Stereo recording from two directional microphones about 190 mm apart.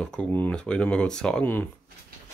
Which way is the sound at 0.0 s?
5° left (ahead or behind).